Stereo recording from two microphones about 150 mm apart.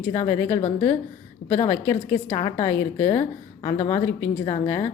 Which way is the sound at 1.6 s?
15° left (ahead or behind).